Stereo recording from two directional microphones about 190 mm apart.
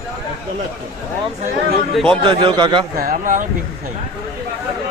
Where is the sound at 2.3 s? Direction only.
25° right (ahead or behind).